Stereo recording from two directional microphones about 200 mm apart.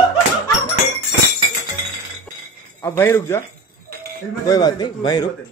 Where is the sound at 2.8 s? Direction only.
10° left (ahead or behind).